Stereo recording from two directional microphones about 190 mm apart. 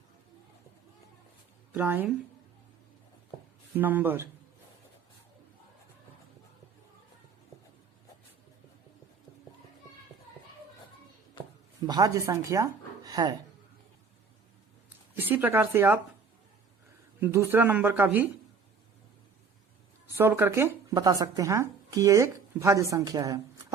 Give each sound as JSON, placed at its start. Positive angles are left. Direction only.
{"t": 1.7, "sound": "speech", "side_deg": -10}
{"t": 3.8, "sound": "speech", "side_deg": -10}
{"t": 11.8, "sound": "a woman's voice", "side_deg": -20}
{"t": 15.1, "sound": "speech", "side_deg": -10}
{"t": 17.2, "sound": "speech", "side_deg": -15}
{"t": 20.1, "sound": "speech", "side_deg": -10}